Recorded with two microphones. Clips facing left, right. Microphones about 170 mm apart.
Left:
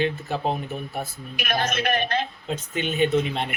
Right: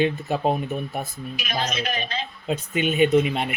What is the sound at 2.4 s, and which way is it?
Speech, 10° right (ahead or behind).